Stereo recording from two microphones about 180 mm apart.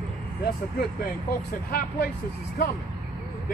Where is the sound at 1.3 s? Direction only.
55° left (ahead or behind).